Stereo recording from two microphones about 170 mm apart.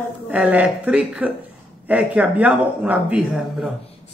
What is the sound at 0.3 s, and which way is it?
Speech, 5° right (ahead or behind).